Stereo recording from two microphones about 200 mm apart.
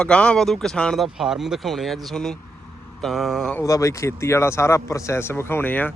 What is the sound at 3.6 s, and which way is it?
Speech, 15° left (ahead or behind).